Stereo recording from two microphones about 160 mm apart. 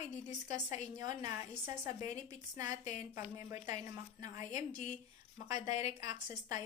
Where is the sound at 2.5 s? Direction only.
20° right (ahead or behind).